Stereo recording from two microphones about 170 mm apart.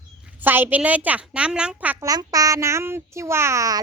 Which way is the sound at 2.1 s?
20° right (ahead or behind).